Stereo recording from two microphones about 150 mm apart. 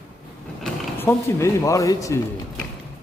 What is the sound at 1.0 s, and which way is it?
Speech, 15° left (ahead or behind).